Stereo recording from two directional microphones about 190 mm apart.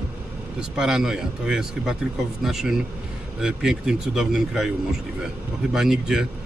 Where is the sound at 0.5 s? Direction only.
5° right (ahead or behind).